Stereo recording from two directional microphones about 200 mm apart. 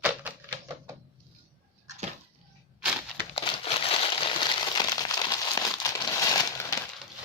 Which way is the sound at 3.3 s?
30° left (ahead or behind).